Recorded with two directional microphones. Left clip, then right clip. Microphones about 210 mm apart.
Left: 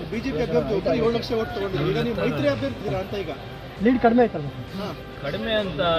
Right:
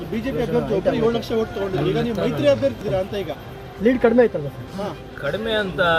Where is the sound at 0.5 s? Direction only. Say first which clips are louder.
Right 2 dB; 50° right (ahead or behind).